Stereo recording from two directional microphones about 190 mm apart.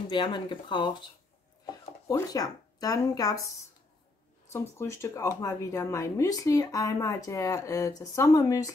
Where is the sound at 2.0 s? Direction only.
20° left (ahead or behind).